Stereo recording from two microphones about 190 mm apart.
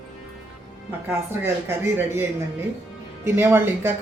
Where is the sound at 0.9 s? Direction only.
10° right (ahead or behind).